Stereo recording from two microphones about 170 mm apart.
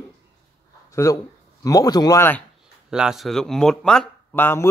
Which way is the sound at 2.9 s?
5° right (ahead or behind).